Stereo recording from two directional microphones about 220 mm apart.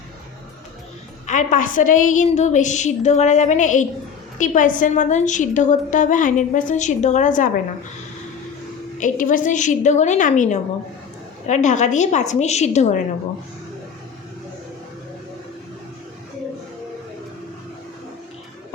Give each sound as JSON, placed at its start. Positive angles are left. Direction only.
{"t": 1.3, "sound": "a woman's voice", "side_deg": 35}
{"t": 9.0, "sound": "a woman's voice", "side_deg": 35}